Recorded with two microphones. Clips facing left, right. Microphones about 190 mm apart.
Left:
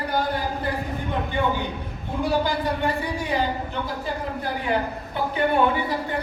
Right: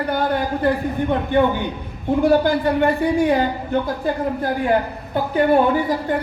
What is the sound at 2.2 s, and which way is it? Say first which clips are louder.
Speech: right 7 dB; 55° right (ahead or behind).